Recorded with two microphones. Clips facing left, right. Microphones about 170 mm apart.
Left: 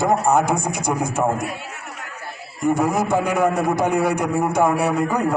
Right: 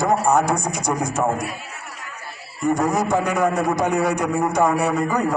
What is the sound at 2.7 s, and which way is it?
A man's voice, centre (ahead or behind).